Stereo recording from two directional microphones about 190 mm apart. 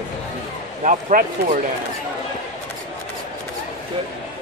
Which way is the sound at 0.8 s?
40° right (ahead or behind).